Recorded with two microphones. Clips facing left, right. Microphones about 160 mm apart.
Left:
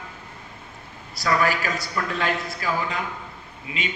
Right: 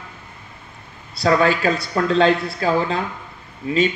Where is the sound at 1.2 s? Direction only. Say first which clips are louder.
Right 6 dB; 25° right (ahead or behind).